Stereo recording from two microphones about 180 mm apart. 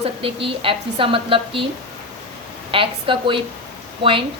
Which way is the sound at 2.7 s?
30° right (ahead or behind).